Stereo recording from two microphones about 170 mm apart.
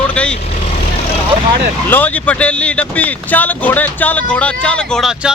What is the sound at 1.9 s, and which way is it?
Speech, 10° left (ahead or behind).